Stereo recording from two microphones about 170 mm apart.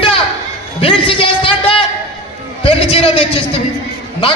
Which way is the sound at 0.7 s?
30° left (ahead or behind).